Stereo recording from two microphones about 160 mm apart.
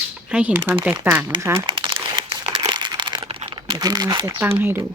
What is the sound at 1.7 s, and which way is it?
Crumpling, 30° right (ahead or behind).